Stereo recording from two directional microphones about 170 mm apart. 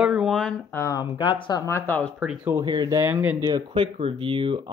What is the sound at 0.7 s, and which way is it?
Speech, 20° left (ahead or behind).